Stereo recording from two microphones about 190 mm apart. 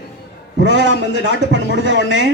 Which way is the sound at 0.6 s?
70° right (ahead or behind).